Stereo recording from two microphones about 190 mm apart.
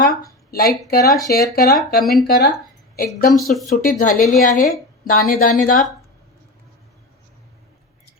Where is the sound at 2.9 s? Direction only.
50° left (ahead or behind).